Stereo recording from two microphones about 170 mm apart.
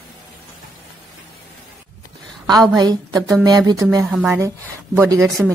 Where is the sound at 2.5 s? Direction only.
25° right (ahead or behind).